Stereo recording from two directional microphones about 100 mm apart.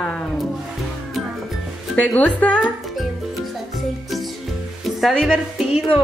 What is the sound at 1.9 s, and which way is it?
Speech, 15° left (ahead or behind).